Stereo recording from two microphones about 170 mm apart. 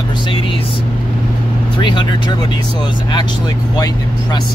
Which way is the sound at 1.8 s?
25° left (ahead or behind).